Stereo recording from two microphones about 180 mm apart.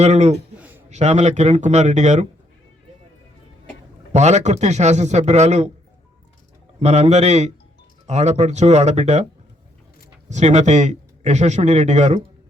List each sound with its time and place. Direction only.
0.0 s speech: 35° right (ahead or behind)
4.1 s speech: 40° right (ahead or behind)
6.7 s speech: 35° right (ahead or behind)
10.2 s speech: 40° right (ahead or behind)